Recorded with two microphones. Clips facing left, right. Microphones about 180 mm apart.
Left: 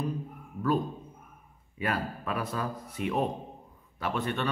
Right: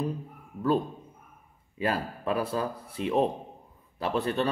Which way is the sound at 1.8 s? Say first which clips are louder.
Right 2 dB; 30° right (ahead or behind).